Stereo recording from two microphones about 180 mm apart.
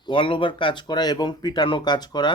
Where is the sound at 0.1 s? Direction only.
25° left (ahead or behind).